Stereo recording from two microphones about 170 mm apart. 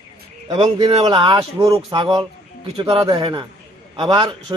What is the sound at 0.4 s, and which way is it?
A man's voice, 25° right (ahead or behind).